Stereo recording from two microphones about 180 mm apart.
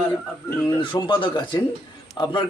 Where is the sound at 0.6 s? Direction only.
25° left (ahead or behind).